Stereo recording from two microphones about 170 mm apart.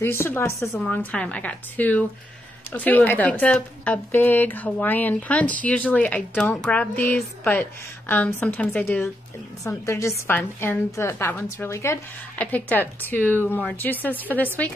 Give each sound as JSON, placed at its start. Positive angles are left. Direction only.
{"t": 0.0, "sound": "a woman's voice", "side_deg": 15}